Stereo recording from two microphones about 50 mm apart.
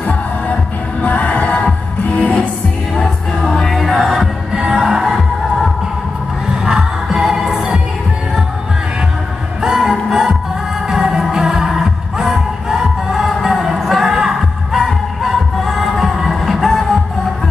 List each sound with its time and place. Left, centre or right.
1.0 s music: left
3.0 s music: centre
4.5 s music: centre
9.6 s music: centre